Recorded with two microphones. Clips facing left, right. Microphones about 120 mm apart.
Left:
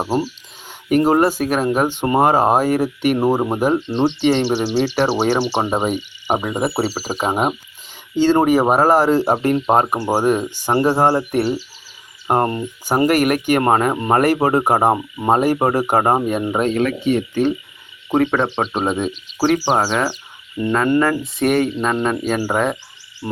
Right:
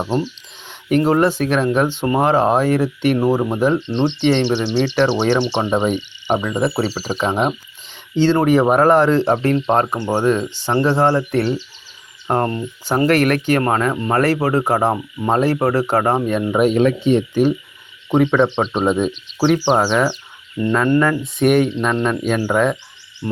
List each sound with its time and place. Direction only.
0.0 s a sound: 5° left (ahead or behind)
1.2 s speech: 10° left (ahead or behind)
3.8 s speech: 5° left (ahead or behind)
8.7 s speech: 5° left (ahead or behind)
12.3 s speech: 20° left (ahead or behind)
13.1 s speech: 10° left (ahead or behind)
13.6 s speech: 25° left (ahead or behind)
16.6 s speech: 15° right (ahead or behind)
18.1 s speech: 5° left (ahead or behind)